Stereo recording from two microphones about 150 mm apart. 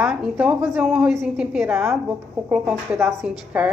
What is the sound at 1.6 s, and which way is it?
A woman's voice, 15° right (ahead or behind).